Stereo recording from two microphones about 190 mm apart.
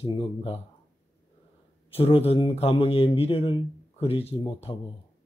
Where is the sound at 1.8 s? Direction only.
30° left (ahead or behind).